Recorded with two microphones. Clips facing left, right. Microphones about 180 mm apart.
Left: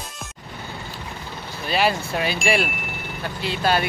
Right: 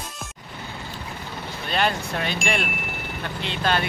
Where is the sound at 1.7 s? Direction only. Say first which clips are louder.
Left 3 dB; 5° left (ahead or behind).